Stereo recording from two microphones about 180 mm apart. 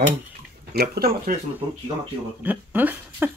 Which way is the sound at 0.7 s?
60° right (ahead or behind).